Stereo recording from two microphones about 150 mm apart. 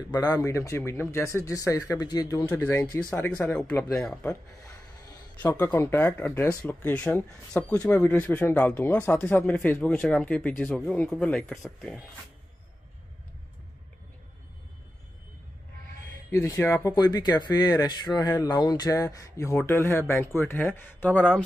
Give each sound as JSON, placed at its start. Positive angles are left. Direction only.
{"t": 0.1, "sound": "speech", "side_deg": 25}
{"t": 5.4, "sound": "speech", "side_deg": 15}
{"t": 16.3, "sound": "speech", "side_deg": 20}